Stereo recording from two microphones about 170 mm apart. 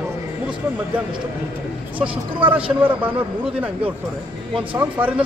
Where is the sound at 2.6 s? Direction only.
10° right (ahead or behind).